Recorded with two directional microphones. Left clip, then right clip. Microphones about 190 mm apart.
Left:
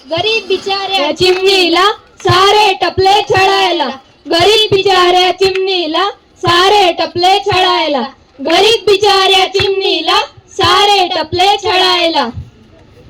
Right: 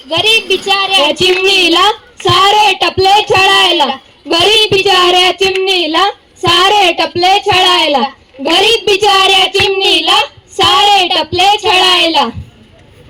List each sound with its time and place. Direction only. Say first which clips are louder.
0.1 s a woman's voice: right 3 dB; 30° right (ahead or behind)